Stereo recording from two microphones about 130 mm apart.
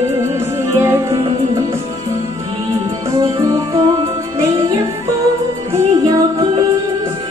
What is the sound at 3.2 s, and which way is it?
Music, 25° right (ahead or behind).